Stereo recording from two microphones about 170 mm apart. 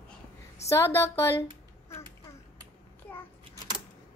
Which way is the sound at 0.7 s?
15° left (ahead or behind).